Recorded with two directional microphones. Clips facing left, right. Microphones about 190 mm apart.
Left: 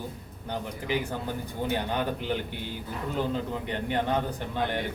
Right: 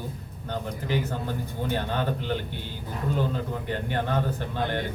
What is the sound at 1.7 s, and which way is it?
Speech, 15° left (ahead or behind).